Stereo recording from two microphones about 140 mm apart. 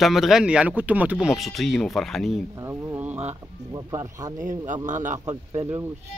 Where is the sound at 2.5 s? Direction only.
20° right (ahead or behind).